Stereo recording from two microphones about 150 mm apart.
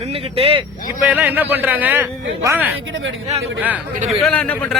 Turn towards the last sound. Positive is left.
turn(degrees=10)  # may be behind; listen again after turning